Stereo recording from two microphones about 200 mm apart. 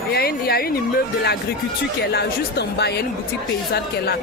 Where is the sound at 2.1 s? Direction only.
55° left (ahead or behind).